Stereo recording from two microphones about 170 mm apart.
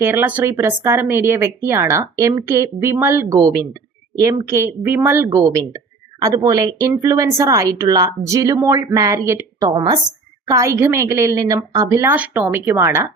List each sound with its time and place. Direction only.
0.0 s speech: 10° right (ahead or behind)